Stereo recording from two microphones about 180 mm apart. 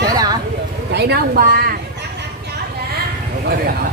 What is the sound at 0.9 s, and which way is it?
Speech, 65° right (ahead or behind).